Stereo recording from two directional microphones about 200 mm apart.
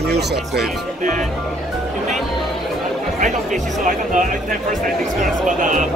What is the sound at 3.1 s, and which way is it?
Speech, 40° right (ahead or behind).